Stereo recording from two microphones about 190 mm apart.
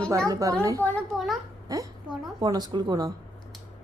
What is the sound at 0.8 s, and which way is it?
Speech, 5° left (ahead or behind).